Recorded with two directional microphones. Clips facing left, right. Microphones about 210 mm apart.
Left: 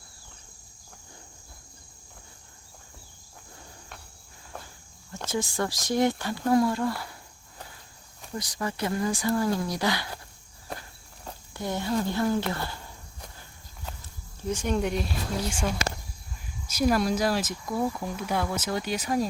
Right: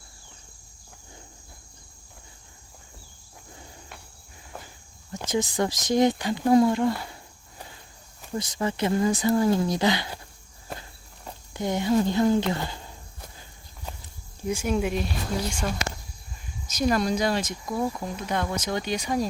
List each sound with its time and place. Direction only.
5.1 s speech: 20° right (ahead or behind)
8.4 s speech: 25° right (ahead or behind)
11.5 s speech: 20° right (ahead or behind)
14.4 s cricket: 10° right (ahead or behind)
15.4 s speech: 10° left (ahead or behind)